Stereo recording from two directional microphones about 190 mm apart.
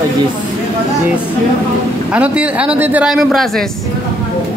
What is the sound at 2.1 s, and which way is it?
Speech, 5° right (ahead or behind).